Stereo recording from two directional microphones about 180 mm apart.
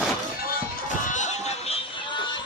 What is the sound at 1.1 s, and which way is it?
Music, 40° left (ahead or behind).